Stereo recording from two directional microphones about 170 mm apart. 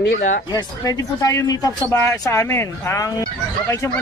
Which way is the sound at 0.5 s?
20° left (ahead or behind).